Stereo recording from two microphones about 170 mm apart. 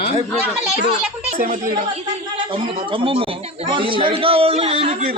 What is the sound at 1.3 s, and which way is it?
Speech, 55° right (ahead or behind).